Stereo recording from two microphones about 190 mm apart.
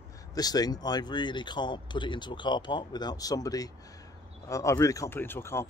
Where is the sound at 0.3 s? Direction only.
20° left (ahead or behind).